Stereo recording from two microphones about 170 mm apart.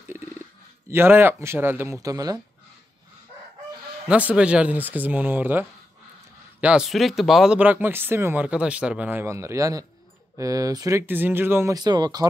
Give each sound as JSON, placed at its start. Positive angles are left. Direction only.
{"t": 0.8, "sound": "speech", "side_deg": -15}
{"t": 4.1, "sound": "speech", "side_deg": -10}